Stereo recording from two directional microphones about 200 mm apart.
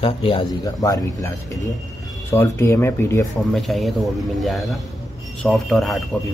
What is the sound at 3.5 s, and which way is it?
Speech, centre (ahead or behind).